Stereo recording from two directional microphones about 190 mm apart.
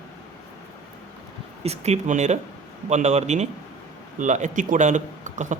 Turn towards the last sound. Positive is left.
turn(degrees=-40)  # may be behind; listen again after turning